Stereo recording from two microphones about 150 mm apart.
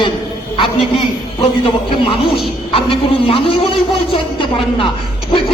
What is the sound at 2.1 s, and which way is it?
A man's voice, 40° left (ahead or behind).